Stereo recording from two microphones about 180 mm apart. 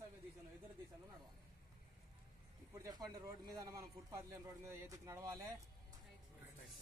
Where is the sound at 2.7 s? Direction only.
20° right (ahead or behind).